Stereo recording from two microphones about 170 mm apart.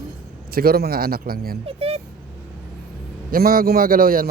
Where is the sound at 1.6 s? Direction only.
35° right (ahead or behind).